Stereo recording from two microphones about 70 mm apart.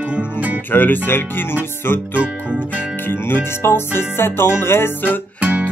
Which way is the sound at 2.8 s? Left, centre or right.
Left.